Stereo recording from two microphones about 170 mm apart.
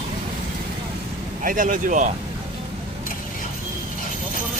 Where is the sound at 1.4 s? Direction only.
55° right (ahead or behind).